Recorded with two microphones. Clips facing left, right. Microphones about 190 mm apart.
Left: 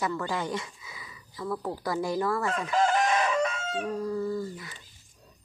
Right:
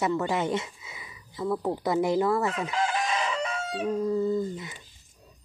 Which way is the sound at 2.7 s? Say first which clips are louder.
Left 7 dB; 50° left (ahead or behind).